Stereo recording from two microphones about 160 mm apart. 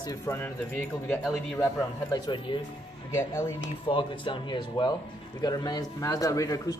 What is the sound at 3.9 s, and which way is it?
Speech, 30° left (ahead or behind).